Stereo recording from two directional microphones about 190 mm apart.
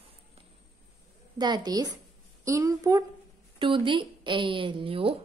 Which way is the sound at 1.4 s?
20° right (ahead or behind).